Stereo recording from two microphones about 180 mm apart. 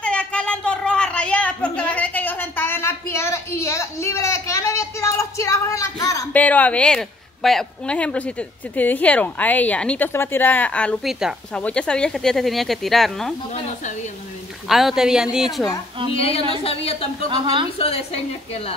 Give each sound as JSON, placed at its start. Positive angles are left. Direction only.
{"t": 0.0, "sound": "a sound", "side_deg": 5}
{"t": 11.6, "sound": "speech", "side_deg": 5}
{"t": 14.7, "sound": "speech", "side_deg": 0}
{"t": 16.1, "sound": "a woman's voice", "side_deg": 30}
{"t": 17.3, "sound": "a woman's voice", "side_deg": -25}
{"t": 17.7, "sound": "a woman's voice", "side_deg": 30}